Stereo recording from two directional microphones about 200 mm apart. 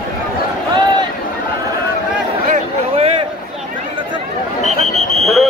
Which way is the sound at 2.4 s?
35° right (ahead or behind).